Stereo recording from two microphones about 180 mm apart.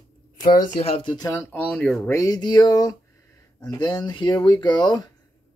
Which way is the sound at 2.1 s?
20° left (ahead or behind).